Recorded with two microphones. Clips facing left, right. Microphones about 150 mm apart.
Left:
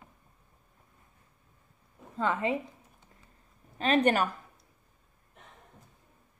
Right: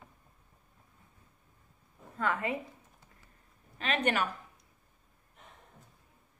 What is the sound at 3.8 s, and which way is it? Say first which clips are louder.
Speech: left 6 dB; 35° left (ahead or behind).